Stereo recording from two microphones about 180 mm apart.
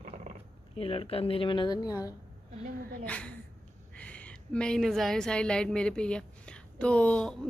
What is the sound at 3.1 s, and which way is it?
Speech, 5° left (ahead or behind).